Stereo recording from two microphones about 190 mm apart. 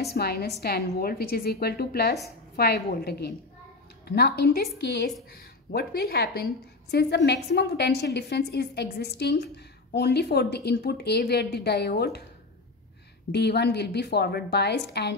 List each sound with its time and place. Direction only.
0.0 s a woman's voice: 55° left (ahead or behind)
13.3 s a woman's voice: 60° left (ahead or behind)